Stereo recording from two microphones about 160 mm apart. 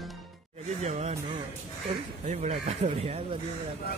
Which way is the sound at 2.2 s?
45° right (ahead or behind).